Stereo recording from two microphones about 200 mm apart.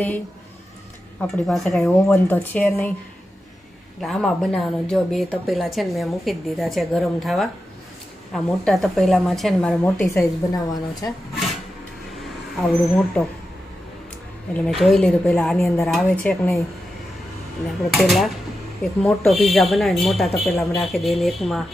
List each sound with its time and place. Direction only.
1.3 s speech: centre (ahead or behind)
4.0 s speech: centre (ahead or behind); by 11.1 s 20° left (ahead or behind)
12.2 s speech: centre (ahead or behind)
14.6 s speech: centre (ahead or behind)
17.9 s speech: centre (ahead or behind)